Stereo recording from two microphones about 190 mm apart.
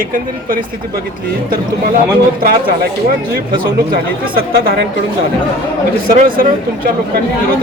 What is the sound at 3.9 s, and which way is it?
Speech, 50° right (ahead or behind).